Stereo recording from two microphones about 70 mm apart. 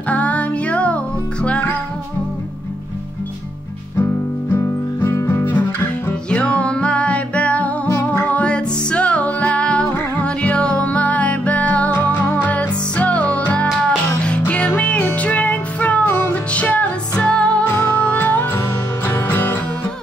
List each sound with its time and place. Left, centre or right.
0.1 s music: centre
5.1 s music: left
6.3 s music: centre